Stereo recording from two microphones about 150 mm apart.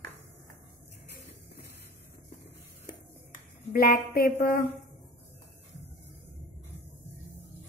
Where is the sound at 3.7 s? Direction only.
80° left.